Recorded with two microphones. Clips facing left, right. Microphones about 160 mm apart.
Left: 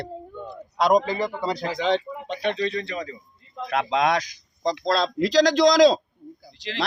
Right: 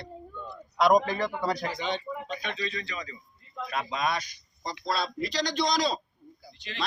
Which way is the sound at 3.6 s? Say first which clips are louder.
Left 8 dB; 90° left.